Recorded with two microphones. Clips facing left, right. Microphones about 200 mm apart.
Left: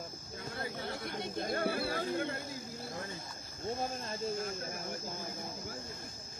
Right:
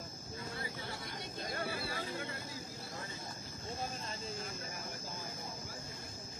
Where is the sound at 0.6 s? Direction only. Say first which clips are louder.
Left 5 dB; 60° left (ahead or behind).